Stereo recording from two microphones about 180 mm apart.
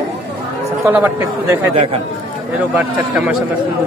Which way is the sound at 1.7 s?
30° right (ahead or behind).